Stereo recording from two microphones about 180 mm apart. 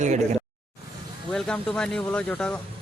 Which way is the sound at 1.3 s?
5° left (ahead or behind).